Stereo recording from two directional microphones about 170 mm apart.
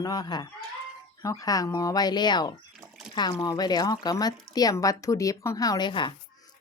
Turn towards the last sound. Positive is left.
turn(degrees=30)  # may be behind; listen again after turning